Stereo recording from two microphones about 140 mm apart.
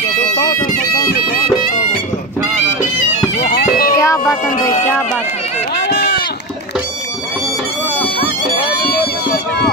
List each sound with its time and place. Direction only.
3.3 s bagpipes: 90° left
3.9 s a sound: 25° left (ahead or behind)
8.6 s music: 90° left